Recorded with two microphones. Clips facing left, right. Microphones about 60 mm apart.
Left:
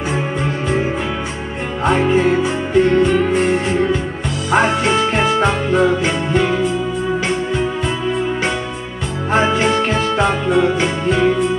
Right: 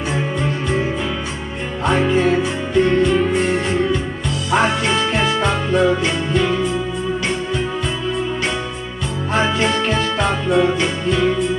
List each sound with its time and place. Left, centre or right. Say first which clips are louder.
1.9 s music: left 2 dB; left
4.5 s music: left 2 dB; left
9.3 s music: left 3 dB; left